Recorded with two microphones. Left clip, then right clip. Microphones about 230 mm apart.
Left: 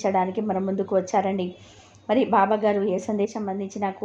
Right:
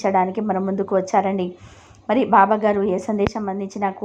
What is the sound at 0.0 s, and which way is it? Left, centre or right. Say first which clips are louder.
A woman's voice: right 4 dB; right.